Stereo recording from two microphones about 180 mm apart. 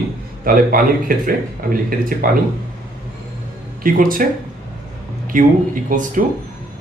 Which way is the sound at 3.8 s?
50° right (ahead or behind).